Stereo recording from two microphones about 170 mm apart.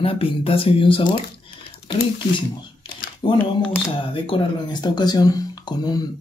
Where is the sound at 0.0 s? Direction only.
35° left (ahead or behind).